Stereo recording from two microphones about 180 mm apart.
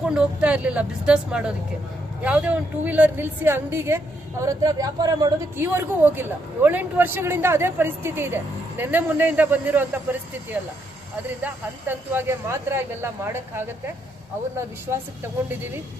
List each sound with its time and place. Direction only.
0.0 s a woman's voice: 5° right (ahead or behind)